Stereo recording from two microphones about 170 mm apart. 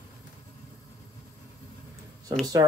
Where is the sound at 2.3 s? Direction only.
25° right (ahead or behind).